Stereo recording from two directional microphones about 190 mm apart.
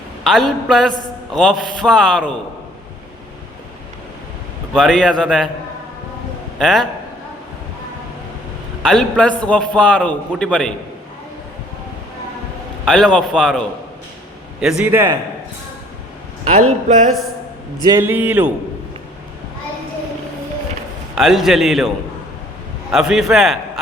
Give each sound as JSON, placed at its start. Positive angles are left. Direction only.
{"t": 0.3, "sound": "a man's voice", "side_deg": 0}
{"t": 4.7, "sound": "a man's voice", "side_deg": 5}
{"t": 6.6, "sound": "a man's voice", "side_deg": 0}
{"t": 8.8, "sound": "a man's voice", "side_deg": 5}
{"t": 12.8, "sound": "a man's voice", "side_deg": 5}
{"t": 14.8, "sound": "a man's voice", "side_deg": -15}
{"t": 16.5, "sound": "a man's voice", "side_deg": -40}
{"t": 17.8, "sound": "a man's voice", "side_deg": -10}
{"t": 21.2, "sound": "a man's voice", "side_deg": 0}